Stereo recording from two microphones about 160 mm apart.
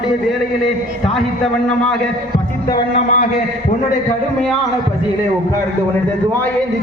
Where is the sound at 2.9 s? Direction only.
55° left (ahead or behind).